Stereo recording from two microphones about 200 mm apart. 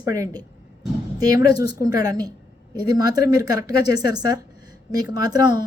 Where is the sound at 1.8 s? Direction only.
20° right (ahead or behind).